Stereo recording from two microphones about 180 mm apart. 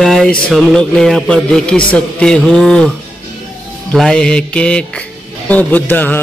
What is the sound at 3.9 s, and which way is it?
A man's voice, 5° left (ahead or behind).